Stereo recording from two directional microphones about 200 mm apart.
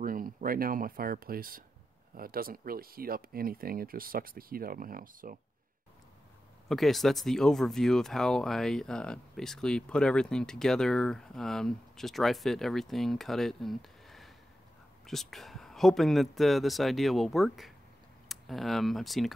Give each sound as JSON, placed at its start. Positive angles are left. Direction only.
{"t": 0.0, "sound": "speech", "side_deg": -45}
{"t": 6.7, "sound": "speech", "side_deg": 0}